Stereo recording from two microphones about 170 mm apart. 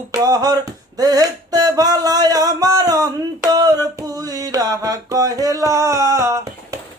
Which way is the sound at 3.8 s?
20° right (ahead or behind).